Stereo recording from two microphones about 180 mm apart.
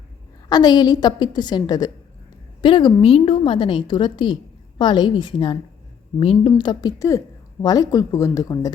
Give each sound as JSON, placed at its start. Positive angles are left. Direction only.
{"t": 0.4, "sound": "a woman's voice", "side_deg": 20}